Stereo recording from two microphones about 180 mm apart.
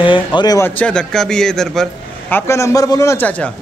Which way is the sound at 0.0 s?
25° left (ahead or behind).